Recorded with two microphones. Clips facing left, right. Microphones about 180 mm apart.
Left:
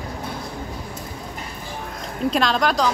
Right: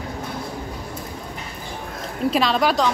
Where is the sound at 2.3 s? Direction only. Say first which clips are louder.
Right 1 dB; 5° right (ahead or behind).